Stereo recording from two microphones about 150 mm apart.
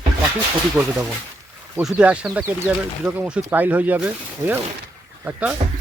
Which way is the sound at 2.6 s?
5° right (ahead or behind).